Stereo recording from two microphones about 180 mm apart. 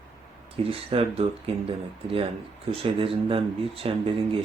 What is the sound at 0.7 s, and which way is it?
Speech, 30° right (ahead or behind).